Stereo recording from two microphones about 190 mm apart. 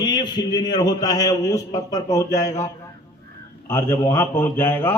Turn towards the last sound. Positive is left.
turn(degrees=10)  # may be behind; listen again after turning